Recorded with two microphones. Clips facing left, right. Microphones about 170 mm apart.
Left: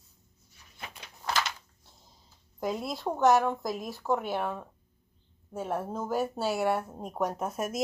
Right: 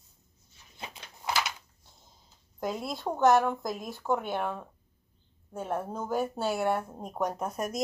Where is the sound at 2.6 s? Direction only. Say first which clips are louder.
Left 1 dB; centre (ahead or behind).